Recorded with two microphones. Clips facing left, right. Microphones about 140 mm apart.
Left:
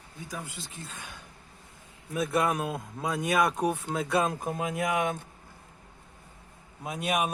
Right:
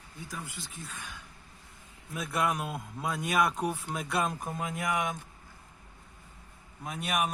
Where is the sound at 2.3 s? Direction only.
25° left (ahead or behind).